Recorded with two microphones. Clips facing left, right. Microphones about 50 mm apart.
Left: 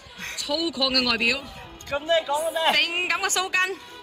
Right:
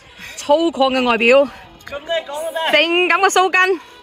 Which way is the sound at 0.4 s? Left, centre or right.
Right.